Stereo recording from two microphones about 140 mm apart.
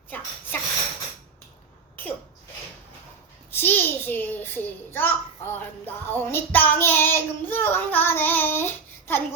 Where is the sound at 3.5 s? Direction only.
15° left (ahead or behind).